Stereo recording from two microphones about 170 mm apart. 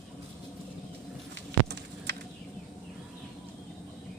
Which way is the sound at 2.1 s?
75° right (ahead or behind).